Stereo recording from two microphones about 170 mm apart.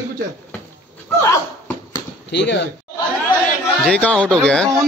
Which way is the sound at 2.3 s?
90° left.